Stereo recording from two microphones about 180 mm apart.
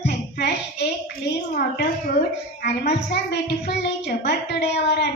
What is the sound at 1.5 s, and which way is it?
Speech, 55° left (ahead or behind).